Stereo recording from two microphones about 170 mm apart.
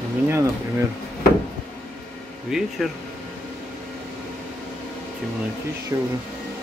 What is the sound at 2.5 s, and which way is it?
Speech, 5° right (ahead or behind).